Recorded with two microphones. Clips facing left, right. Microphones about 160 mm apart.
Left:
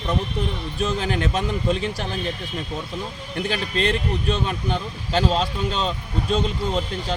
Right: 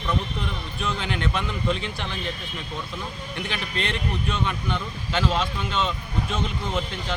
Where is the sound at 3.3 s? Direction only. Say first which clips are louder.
Left 7 dB; 40° left (ahead or behind).